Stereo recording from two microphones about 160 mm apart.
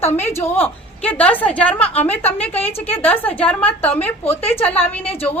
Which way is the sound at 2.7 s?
35° left (ahead or behind).